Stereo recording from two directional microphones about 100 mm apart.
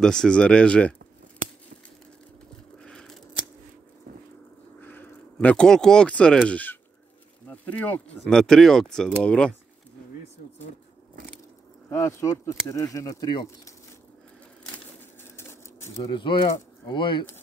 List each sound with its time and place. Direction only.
0.0 s speech: 5° left (ahead or behind)
2.8 s a sound: 5° left (ahead or behind)
4.8 s speech: 20° left (ahead or behind)
8.2 s speech: 5° left (ahead or behind)
11.9 s speech: 30° left (ahead or behind)
15.3 s a sound: 25° left (ahead or behind)
16.0 s speech: 55° left (ahead or behind)